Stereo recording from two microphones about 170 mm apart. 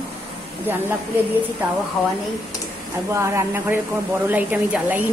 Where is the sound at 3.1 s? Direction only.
15° right (ahead or behind).